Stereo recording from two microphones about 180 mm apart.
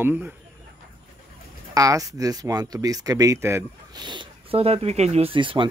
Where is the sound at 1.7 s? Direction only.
20° right (ahead or behind).